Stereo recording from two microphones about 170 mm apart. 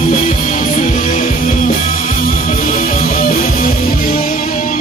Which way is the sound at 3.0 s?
55° left (ahead or behind).